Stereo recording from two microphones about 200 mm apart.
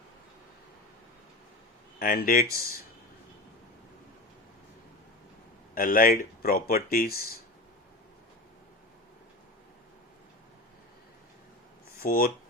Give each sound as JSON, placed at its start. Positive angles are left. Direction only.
{"t": 2.0, "sound": "speech", "side_deg": 45}
{"t": 5.7, "sound": "speech", "side_deg": 45}
{"t": 12.0, "sound": "speech", "side_deg": 45}